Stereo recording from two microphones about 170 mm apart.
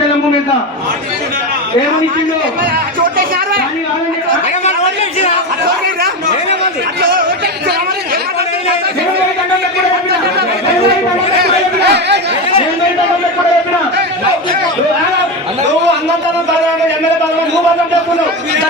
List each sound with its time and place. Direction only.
11.4 s chatter: 85° right